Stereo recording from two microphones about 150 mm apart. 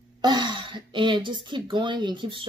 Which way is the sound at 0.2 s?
30° right (ahead or behind).